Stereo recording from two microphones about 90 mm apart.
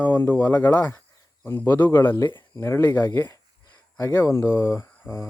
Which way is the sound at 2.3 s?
60° left (ahead or behind).